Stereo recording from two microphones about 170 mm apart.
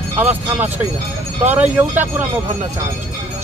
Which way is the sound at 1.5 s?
10° right (ahead or behind).